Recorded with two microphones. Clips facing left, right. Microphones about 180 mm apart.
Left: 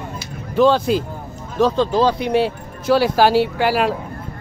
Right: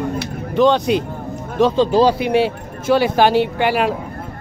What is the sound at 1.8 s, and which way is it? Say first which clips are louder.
Speech: right 3 dB; 10° right (ahead or behind).